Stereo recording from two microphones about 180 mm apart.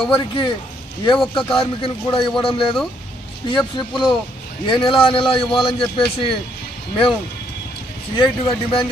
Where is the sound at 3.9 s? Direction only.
Centre (ahead or behind).